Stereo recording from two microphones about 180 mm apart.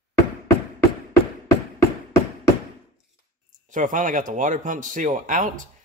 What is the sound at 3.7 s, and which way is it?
Speech, 45° right (ahead or behind).